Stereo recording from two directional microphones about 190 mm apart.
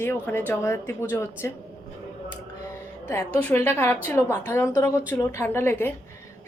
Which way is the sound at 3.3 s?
10° left (ahead or behind).